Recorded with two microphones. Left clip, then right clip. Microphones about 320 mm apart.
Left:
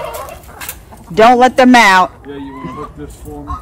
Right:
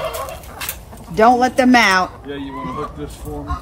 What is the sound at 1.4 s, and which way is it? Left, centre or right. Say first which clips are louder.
Speech: left 6 dB; centre.